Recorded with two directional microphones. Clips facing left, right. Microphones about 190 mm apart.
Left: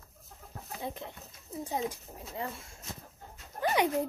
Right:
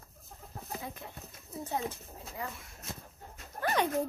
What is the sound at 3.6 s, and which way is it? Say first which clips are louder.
Dog: left 2 dB; 10° left (ahead or behind).